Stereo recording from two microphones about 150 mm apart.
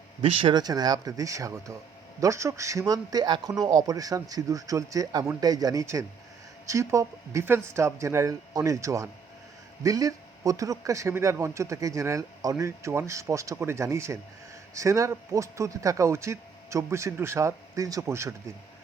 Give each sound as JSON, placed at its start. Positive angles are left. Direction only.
{"t": 0.2, "sound": "a man's voice", "side_deg": -30}